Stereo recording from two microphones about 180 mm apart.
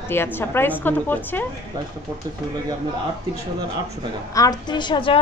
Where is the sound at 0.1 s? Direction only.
10° left (ahead or behind).